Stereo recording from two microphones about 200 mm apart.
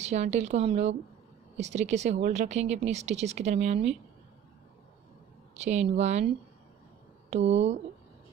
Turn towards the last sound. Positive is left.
turn(degrees=-35)  # may be behind; listen again after turning